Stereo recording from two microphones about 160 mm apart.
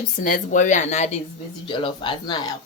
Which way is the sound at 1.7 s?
30° left (ahead or behind).